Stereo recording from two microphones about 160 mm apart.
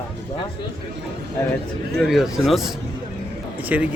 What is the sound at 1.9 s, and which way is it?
Speech, centre (ahead or behind).